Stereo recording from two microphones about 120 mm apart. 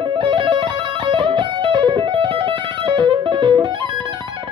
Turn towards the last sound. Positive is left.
turn(degrees=-40)  # may be behind; listen again after turning